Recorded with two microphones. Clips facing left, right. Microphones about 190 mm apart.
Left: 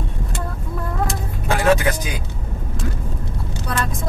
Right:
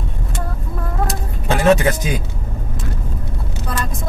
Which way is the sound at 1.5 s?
25° right (ahead or behind).